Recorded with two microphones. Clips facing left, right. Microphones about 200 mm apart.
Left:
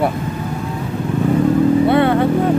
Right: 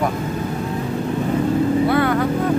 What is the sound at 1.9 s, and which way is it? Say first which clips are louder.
Vehicle: left 4 dB; 25° left (ahead or behind).